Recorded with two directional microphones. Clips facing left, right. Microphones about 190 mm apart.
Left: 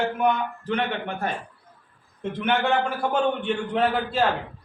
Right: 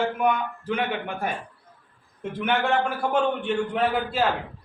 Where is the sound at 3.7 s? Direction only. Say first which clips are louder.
Left 4 dB; 5° right (ahead or behind).